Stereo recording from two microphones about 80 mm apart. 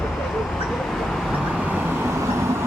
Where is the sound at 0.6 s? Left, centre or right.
Centre.